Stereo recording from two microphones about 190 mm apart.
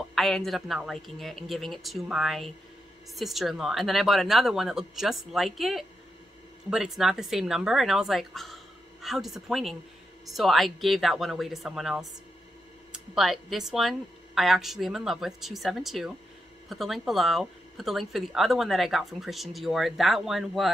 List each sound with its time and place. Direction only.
0.1 s speech: centre (ahead or behind)